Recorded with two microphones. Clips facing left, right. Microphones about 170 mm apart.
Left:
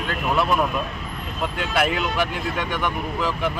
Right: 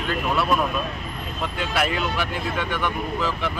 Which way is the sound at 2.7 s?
15° left (ahead or behind).